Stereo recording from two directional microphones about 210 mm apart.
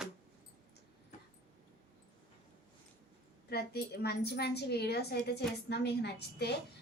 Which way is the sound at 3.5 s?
50° left (ahead or behind).